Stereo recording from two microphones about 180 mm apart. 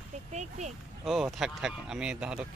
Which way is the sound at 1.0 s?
Centre (ahead or behind).